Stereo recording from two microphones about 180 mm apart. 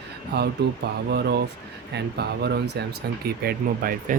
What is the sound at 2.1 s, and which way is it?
Speech, 65° right (ahead or behind).